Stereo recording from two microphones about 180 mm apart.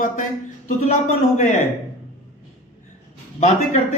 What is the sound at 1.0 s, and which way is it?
Speech, 40° left (ahead or behind).